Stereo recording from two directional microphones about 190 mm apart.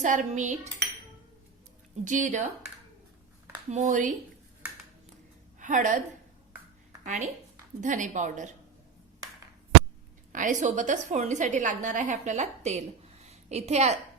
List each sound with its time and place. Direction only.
0.0 s a woman's voice: 40° right (ahead or behind)
2.0 s a woman's voice: 40° right (ahead or behind)
5.5 s a woman's voice: 40° right (ahead or behind)
7.0 s a woman's voice: 40° right (ahead or behind)
10.3 s a woman's voice: 40° right (ahead or behind)